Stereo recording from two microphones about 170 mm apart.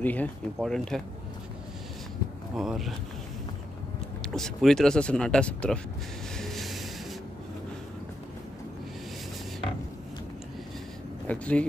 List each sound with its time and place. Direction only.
0.0 s speech: 10° left (ahead or behind)
2.5 s speech: centre (ahead or behind)
4.3 s speech: 5° left (ahead or behind)
6.3 s train: centre (ahead or behind)
11.2 s speech: 10° left (ahead or behind)